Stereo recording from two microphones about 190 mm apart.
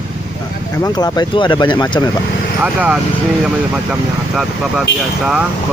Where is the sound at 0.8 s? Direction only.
20° left (ahead or behind).